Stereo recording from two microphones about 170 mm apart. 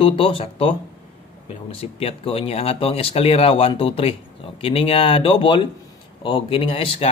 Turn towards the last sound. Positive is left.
turn(degrees=35)  # may be behind; listen again after turning